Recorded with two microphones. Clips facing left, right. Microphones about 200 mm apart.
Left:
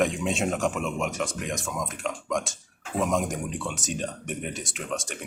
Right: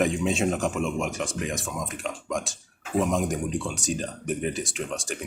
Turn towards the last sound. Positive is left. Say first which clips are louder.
# right 1 dB
turn(degrees=0)  # may be behind; listen again after turning